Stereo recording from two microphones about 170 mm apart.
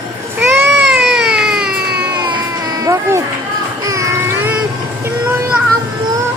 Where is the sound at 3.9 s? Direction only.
20° right (ahead or behind).